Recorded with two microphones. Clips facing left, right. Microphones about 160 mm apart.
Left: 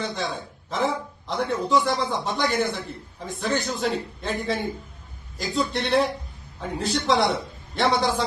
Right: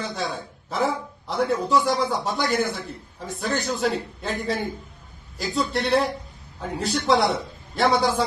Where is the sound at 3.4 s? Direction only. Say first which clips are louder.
Left 1 dB; 40° right (ahead or behind).